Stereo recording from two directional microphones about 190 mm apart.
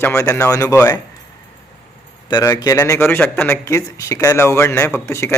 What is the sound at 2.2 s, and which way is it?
Speech, 20° left (ahead or behind).